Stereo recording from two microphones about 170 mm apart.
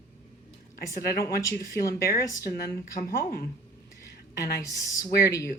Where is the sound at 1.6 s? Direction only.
20° left (ahead or behind).